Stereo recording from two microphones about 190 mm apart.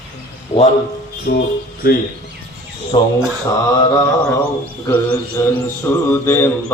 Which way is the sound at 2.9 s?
25° left (ahead or behind).